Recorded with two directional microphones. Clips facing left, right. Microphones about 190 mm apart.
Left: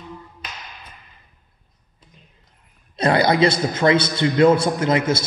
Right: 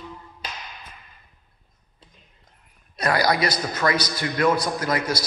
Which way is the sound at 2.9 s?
25° left (ahead or behind).